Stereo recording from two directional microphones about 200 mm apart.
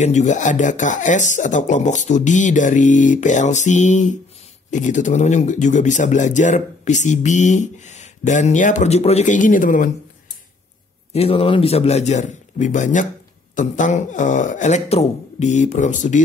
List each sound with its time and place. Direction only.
0.0 s speech: 35° left (ahead or behind)
11.1 s speech: 30° left (ahead or behind)